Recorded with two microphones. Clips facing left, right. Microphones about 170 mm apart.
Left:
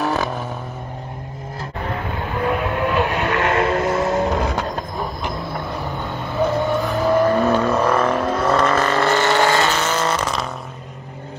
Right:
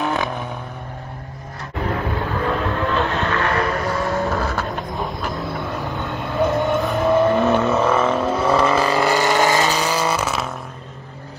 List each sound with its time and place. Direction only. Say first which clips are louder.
0.0 s vehicle: left 1 dB; centre (ahead or behind)
2.4 s vehicle: left 3 dB; 15° left (ahead or behind)
6.4 s vehicle: even; centre (ahead or behind)